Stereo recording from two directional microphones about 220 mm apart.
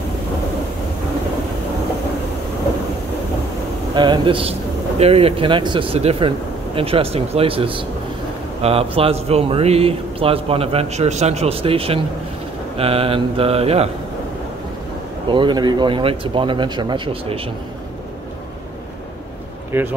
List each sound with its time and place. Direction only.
3.9 s a man's voice: 20° right (ahead or behind)
15.2 s a man's voice: 20° right (ahead or behind)
19.7 s speech: 10° right (ahead or behind)